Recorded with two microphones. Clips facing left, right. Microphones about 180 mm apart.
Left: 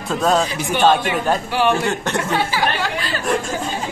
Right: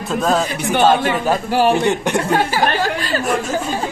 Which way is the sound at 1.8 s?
15° right (ahead or behind).